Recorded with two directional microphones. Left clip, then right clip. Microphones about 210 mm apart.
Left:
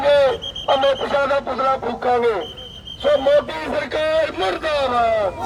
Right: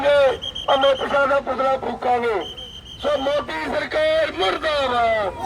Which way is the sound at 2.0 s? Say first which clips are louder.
Left 2 dB; centre (ahead or behind).